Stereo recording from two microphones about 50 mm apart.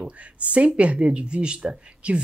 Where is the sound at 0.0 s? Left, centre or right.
Right.